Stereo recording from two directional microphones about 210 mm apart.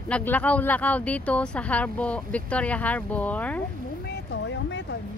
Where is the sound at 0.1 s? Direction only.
5° left (ahead or behind).